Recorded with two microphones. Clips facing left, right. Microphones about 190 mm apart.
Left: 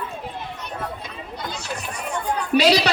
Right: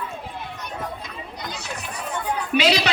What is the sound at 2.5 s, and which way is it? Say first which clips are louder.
Speech: left 3 dB; 30° left (ahead or behind).